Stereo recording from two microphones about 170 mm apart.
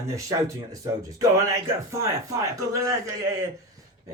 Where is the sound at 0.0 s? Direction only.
20° right (ahead or behind).